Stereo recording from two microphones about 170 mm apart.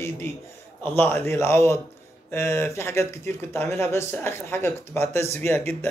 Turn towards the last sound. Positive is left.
turn(degrees=15)  # may be behind; listen again after turning